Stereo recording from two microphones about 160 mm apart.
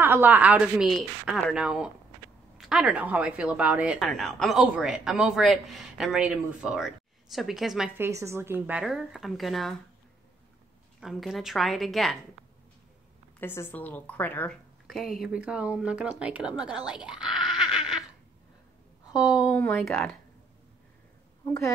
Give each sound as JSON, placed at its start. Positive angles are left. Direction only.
{"t": 0.0, "sound": "a woman's voice", "side_deg": -15}
{"t": 8.0, "sound": "a woman's voice", "side_deg": -20}
{"t": 11.0, "sound": "a woman's voice", "side_deg": 0}
{"t": 13.4, "sound": "a woman's voice", "side_deg": 15}
{"t": 14.9, "sound": "speech", "side_deg": 0}
{"t": 19.1, "sound": "a woman's voice", "side_deg": -5}
{"t": 19.5, "sound": "a woman's voice", "side_deg": 10}
{"t": 21.5, "sound": "a woman's voice", "side_deg": 20}